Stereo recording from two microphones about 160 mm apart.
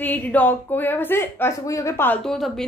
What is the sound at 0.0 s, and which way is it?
A woman's voice, 10° left (ahead or behind).